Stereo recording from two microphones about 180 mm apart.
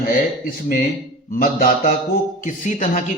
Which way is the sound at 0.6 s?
45° left (ahead or behind).